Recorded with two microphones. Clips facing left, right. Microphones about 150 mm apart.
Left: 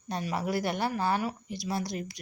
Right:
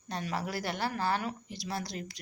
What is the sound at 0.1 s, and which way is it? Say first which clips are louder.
A woman's voice: left 4 dB; 15° left (ahead or behind).